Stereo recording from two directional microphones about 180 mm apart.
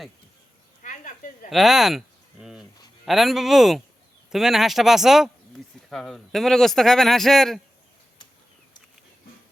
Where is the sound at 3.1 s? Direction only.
Centre (ahead or behind).